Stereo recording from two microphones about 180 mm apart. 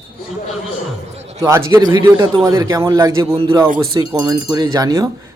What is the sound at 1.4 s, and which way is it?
A man's voice, 20° right (ahead or behind).